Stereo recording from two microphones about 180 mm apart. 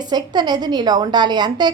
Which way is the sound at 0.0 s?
25° right (ahead or behind).